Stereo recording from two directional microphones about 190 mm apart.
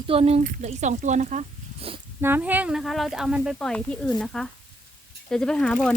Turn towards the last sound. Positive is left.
turn(degrees=5)  # may be behind; listen again after turning